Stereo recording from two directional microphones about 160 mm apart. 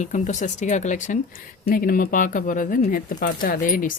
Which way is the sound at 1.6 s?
65° left (ahead or behind).